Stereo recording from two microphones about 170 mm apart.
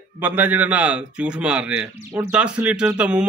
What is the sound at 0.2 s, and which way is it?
A man's voice, 10° right (ahead or behind).